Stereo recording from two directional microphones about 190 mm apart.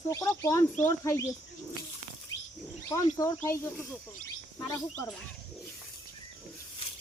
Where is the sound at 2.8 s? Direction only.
15° left (ahead or behind).